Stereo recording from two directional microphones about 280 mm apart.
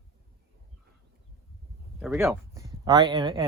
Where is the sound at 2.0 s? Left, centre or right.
Centre.